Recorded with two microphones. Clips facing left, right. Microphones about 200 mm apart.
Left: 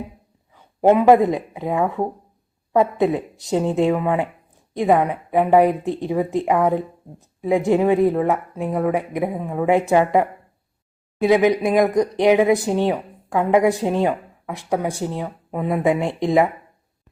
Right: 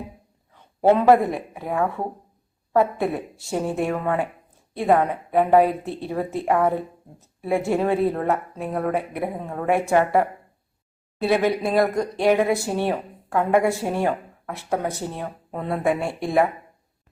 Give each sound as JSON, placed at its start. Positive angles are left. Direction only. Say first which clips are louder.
{"t": 0.5, "sound": "speech", "louder": "left 2 dB", "side_deg": 15}